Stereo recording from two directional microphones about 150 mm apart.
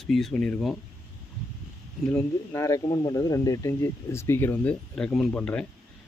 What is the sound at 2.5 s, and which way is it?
Speech, 20° left (ahead or behind).